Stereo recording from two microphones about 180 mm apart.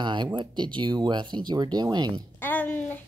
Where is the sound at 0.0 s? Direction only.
25° right (ahead or behind).